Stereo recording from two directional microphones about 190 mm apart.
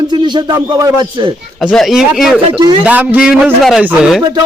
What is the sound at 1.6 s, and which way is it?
A man's voice, centre (ahead or behind).